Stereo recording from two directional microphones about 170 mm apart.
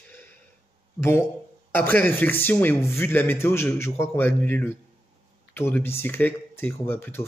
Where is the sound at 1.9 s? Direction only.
10° left (ahead or behind).